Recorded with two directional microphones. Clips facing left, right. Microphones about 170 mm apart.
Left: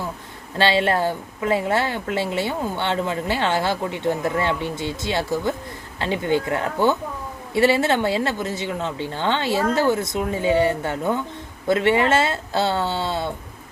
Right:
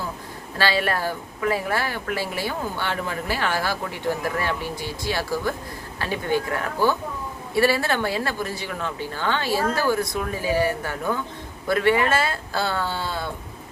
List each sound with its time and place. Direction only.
0.6 s speech: 25° left (ahead or behind)